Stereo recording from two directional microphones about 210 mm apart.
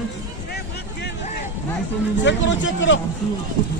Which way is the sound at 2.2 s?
60° left (ahead or behind).